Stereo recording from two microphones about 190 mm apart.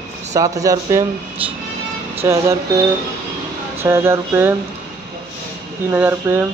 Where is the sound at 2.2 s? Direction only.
15° right (ahead or behind).